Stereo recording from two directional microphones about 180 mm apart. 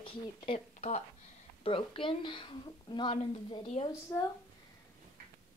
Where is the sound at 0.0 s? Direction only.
35° left (ahead or behind).